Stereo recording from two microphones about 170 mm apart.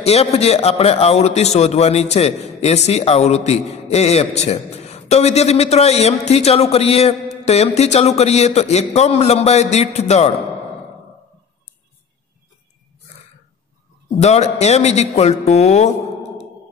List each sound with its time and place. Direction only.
0.0 s a man's voice: 40° left (ahead or behind)
14.1 s a man's voice: 40° left (ahead or behind)